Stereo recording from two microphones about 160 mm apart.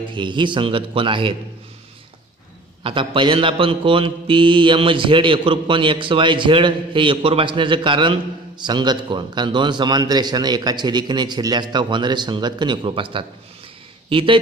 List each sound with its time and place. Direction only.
0.1 s mantra: 30° right (ahead or behind)
2.8 s mantra: 30° right (ahead or behind)
14.0 s speech: 35° right (ahead or behind)